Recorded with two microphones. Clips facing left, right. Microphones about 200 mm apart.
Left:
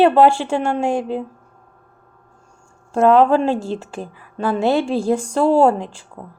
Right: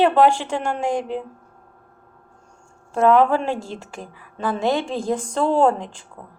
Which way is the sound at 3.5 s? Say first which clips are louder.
Left 6 dB; 15° right (ahead or behind).